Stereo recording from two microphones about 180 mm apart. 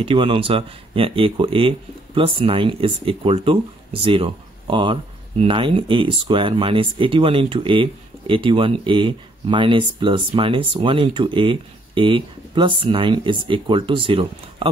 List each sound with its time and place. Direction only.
0.0 s speech: 30° right (ahead or behind)